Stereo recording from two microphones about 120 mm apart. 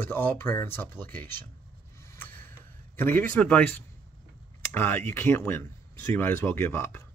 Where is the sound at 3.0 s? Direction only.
15° left (ahead or behind).